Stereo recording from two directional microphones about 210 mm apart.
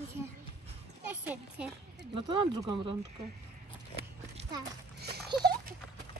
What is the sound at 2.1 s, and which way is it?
Speech, 20° right (ahead or behind).